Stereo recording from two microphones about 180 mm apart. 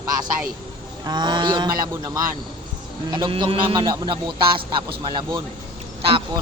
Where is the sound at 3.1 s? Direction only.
25° right (ahead or behind).